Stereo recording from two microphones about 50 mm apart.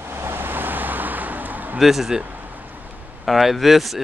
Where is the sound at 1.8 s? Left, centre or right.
Centre.